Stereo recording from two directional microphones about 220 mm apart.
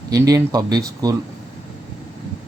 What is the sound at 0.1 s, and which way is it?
Speech, 15° right (ahead or behind).